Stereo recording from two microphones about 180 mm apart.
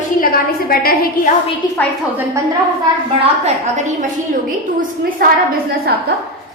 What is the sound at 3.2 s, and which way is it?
Speech, 35° right (ahead or behind).